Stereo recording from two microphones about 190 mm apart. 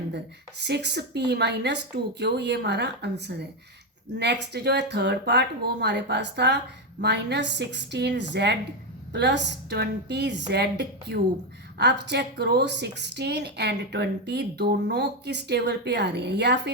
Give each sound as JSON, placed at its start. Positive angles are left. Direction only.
{"t": 0.6, "sound": "a woman's voice", "side_deg": -60}